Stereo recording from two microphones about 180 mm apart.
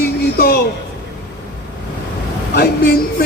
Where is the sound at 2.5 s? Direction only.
65° left (ahead or behind).